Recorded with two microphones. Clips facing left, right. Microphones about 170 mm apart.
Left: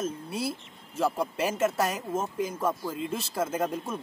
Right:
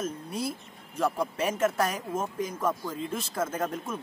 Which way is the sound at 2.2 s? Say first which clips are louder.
Left 1 dB; 30° left (ahead or behind).